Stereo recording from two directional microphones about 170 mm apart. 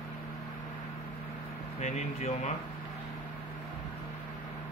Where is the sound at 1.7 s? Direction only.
40° left (ahead or behind).